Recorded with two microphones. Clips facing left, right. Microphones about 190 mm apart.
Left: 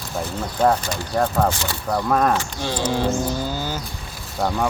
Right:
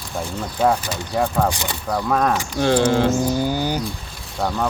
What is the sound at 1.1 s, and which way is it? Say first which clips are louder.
Speech: even; 10° right (ahead or behind).